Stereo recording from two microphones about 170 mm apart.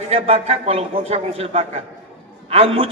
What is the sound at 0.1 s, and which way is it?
A man's voice, 35° right (ahead or behind).